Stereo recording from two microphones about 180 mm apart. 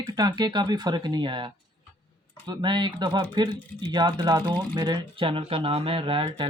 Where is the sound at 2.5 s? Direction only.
25° right (ahead or behind).